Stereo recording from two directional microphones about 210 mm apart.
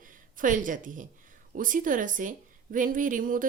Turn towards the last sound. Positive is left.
turn(degrees=-40)  # may be behind; listen again after turning